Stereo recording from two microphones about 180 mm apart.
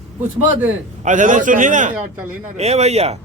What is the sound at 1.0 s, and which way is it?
A man's voice, 45° right (ahead or behind).